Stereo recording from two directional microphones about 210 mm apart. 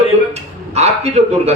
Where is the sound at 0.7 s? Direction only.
30° right (ahead or behind).